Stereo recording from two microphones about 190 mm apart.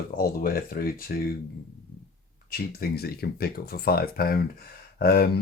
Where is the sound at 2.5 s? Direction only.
50° left (ahead or behind).